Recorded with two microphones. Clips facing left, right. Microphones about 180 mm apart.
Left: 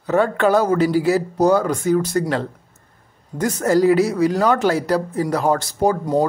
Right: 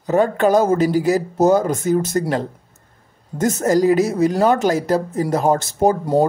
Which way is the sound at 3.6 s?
20° right (ahead or behind).